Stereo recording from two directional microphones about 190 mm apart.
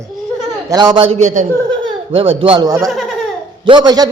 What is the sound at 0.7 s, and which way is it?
Speech, 20° right (ahead or behind).